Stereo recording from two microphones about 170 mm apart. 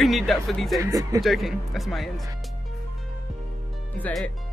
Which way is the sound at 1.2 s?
Centre (ahead or behind).